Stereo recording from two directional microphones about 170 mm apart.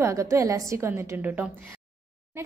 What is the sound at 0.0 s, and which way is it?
A woman's voice, 15° right (ahead or behind).